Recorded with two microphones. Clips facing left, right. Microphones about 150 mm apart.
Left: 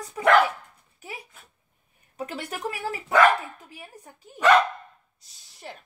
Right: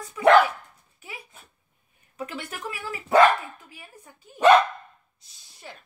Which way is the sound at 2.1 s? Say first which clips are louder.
Left 2 dB; 35° left (ahead or behind).